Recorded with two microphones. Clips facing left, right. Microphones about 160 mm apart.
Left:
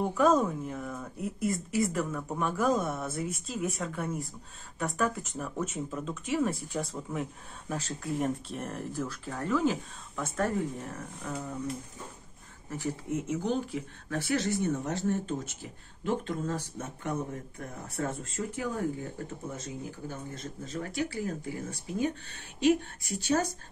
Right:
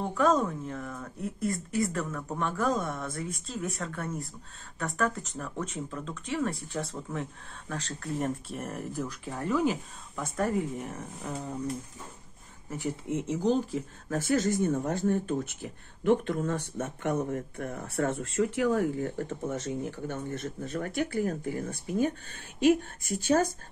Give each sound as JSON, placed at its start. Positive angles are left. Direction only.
{"t": 0.0, "sound": "a woman's voice", "side_deg": 5}
{"t": 8.5, "sound": "speech", "side_deg": -5}
{"t": 10.1, "sound": "speech", "side_deg": -5}
{"t": 10.8, "sound": "speech", "side_deg": -20}
{"t": 12.7, "sound": "speech", "side_deg": -25}